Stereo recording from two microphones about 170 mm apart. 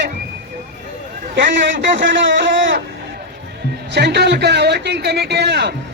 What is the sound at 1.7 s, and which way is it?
A man's voice, 90° right.